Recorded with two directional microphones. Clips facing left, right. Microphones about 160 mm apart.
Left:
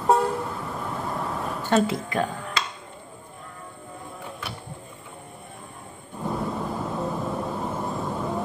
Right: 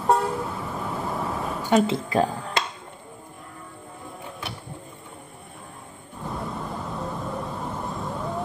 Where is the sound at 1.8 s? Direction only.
30° right (ahead or behind).